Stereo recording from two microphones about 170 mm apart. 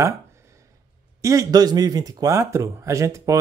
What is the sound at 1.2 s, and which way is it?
Speech, 20° right (ahead or behind).